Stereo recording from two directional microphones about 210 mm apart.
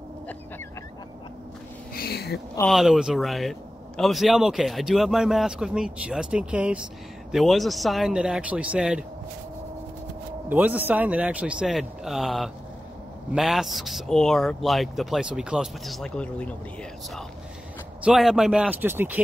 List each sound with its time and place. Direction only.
2.0 s a sound: 50° left (ahead or behind)
2.7 s speech: centre (ahead or behind)
10.5 s speech: 10° right (ahead or behind)
18.0 s speech: centre (ahead or behind)